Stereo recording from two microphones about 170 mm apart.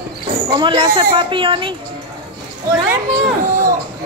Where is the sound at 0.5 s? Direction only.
30° right (ahead or behind).